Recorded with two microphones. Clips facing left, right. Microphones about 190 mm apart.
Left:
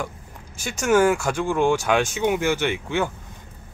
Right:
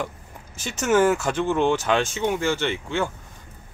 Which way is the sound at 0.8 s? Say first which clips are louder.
Left 1 dB; 10° left (ahead or behind).